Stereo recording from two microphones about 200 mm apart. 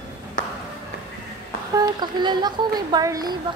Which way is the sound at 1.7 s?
20° right (ahead or behind).